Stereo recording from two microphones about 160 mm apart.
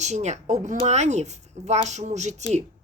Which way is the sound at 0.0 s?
45° right (ahead or behind).